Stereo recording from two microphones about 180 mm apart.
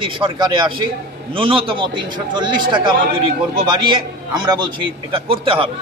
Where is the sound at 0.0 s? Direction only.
30° right (ahead or behind).